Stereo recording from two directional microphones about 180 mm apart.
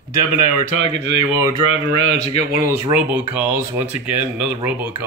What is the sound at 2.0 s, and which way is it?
Speech, 40° left (ahead or behind).